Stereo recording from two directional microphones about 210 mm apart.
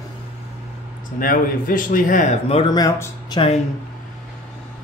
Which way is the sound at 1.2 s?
40° left (ahead or behind).